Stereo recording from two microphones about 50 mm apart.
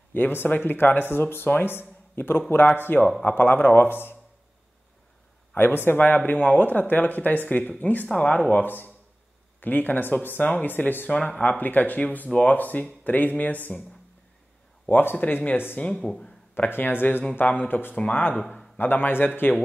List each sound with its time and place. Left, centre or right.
0.1 s speech: left
5.5 s speech: left
12.3 s speech: left
12.5 s speech: left
14.9 s speech: left
16.0 s speech: centre
16.5 s speech: left
17.9 s speech: left
18.8 s speech: left